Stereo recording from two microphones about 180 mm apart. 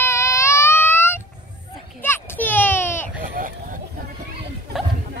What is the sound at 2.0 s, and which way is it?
Children playing, 10° left (ahead or behind).